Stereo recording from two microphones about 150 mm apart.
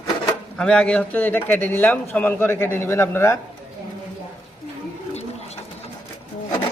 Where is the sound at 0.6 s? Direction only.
5° left (ahead or behind).